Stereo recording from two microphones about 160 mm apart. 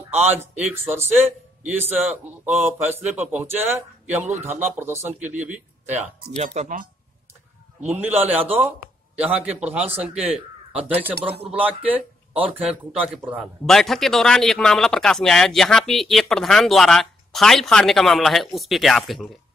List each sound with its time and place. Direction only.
0.2 s a man's voice: 10° right (ahead or behind)
5.0 s speech: 50° right (ahead or behind)
7.8 s speech: 10° right (ahead or behind)